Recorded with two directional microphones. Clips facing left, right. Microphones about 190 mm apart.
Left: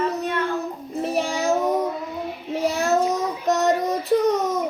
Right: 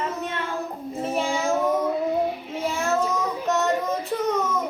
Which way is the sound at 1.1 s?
40° left (ahead or behind).